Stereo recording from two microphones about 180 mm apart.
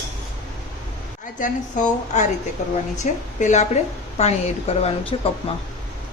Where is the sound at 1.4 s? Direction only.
45° left (ahead or behind).